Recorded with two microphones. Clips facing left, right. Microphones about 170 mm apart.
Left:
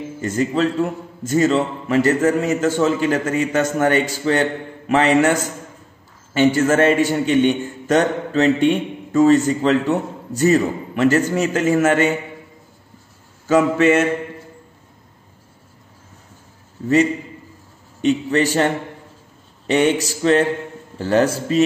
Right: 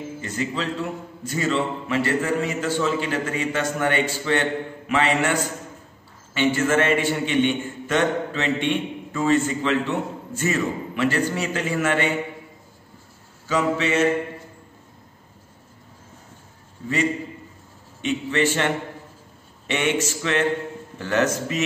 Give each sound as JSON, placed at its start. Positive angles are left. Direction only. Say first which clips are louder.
{"t": 0.2, "sound": "a man's voice", "louder": "left 10 dB", "side_deg": 45}
{"t": 13.5, "sound": "a man's voice", "louder": "left 8 dB", "side_deg": 50}
{"t": 18.0, "sound": "a man's voice", "louder": "left 5 dB", "side_deg": 40}
{"t": 19.7, "sound": "a man's voice", "louder": "left 6 dB", "side_deg": 35}